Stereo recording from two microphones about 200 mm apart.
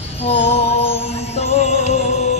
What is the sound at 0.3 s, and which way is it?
Music, 30° left (ahead or behind).